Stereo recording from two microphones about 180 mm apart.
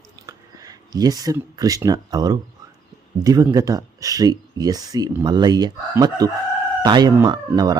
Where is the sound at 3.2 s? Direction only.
20° right (ahead or behind).